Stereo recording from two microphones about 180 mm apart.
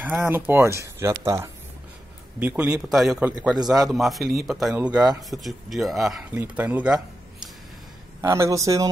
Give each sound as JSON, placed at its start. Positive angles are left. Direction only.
{"t": 0.0, "sound": "speech", "side_deg": -10}
{"t": 8.2, "sound": "speech", "side_deg": -15}